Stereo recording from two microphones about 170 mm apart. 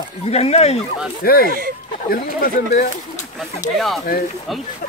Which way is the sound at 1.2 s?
60° left (ahead or behind).